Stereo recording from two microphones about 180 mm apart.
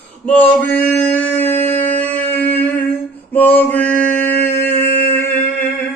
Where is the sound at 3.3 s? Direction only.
10° left (ahead or behind).